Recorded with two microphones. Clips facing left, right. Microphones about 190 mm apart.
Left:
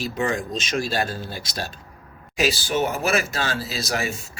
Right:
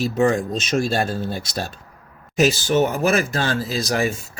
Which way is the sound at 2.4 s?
45° right (ahead or behind).